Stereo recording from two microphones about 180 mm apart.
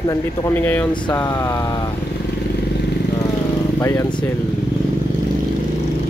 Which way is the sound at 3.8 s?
15° left (ahead or behind).